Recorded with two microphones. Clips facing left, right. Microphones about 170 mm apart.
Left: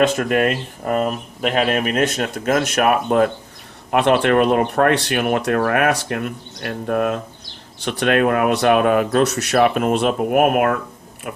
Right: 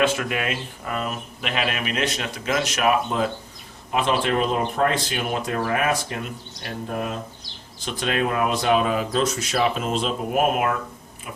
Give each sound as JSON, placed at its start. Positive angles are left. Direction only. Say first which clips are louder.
{"t": 0.2, "sound": "speech", "louder": "left 8 dB", "side_deg": 45}